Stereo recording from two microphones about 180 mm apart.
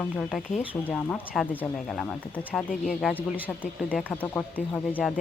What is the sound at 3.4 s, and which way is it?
Speech, 10° left (ahead or behind).